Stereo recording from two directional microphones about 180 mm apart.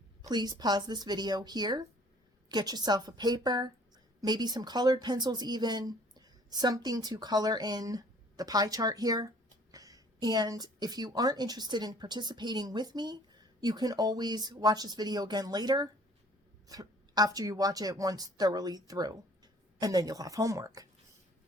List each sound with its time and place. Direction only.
0.2 s a woman's voice: 25° right (ahead or behind)